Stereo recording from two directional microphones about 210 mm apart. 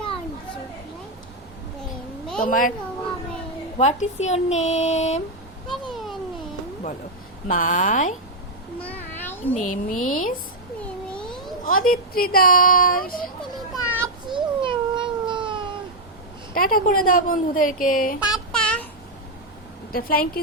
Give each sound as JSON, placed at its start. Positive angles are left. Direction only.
{"t": 2.4, "sound": "speech", "side_deg": 40}
{"t": 3.8, "sound": "speech", "side_deg": 30}
{"t": 5.6, "sound": "a sound", "side_deg": 0}
{"t": 7.4, "sound": "speech", "side_deg": 40}
{"t": 8.8, "sound": "a sound", "side_deg": 10}
{"t": 9.6, "sound": "speech", "side_deg": 40}
{"t": 10.8, "sound": "a sound", "side_deg": 5}
{"t": 11.6, "sound": "speech", "side_deg": 40}
{"t": 14.0, "sound": "cat", "side_deg": -20}
{"t": 16.6, "sound": "speech", "side_deg": 45}
{"t": 18.3, "sound": "a sound", "side_deg": 5}
{"t": 19.9, "sound": "speech", "side_deg": 45}